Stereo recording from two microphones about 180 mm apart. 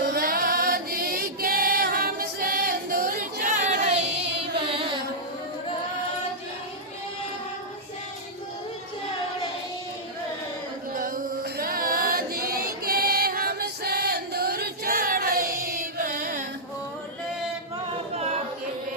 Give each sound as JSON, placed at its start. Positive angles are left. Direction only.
{"t": 0.0, "sound": "music", "side_deg": -60}
{"t": 4.4, "sound": "carnatic music", "side_deg": -30}
{"t": 10.9, "sound": "music", "side_deg": -50}